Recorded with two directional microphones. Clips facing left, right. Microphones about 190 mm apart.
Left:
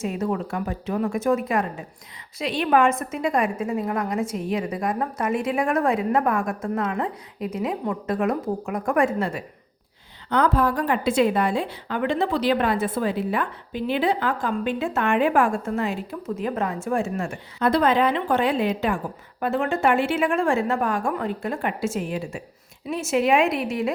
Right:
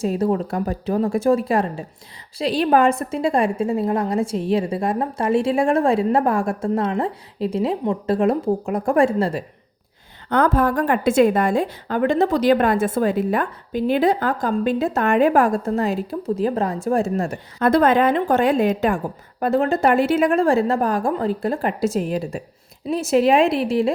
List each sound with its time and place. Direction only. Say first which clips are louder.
0.0 s a woman's voice: right 5 dB; 35° right (ahead or behind)
10.2 s a woman's voice: right 3 dB; 50° right (ahead or behind); by 23.9 s 35° right (ahead or behind)